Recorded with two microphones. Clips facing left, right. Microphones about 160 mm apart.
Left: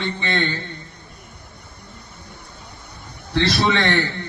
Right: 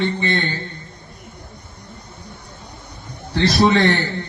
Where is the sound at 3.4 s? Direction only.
40° right (ahead or behind).